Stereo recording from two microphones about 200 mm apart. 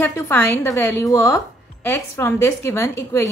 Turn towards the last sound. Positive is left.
turn(degrees=15)  # may be behind; listen again after turning